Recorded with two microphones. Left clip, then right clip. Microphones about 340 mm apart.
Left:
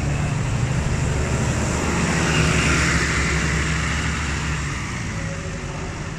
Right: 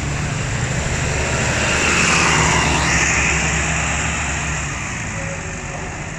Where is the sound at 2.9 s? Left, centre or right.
Centre.